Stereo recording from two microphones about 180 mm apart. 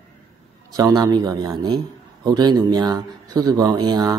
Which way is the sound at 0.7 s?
20° right (ahead or behind).